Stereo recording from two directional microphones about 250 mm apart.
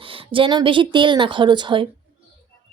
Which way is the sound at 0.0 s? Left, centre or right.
Right.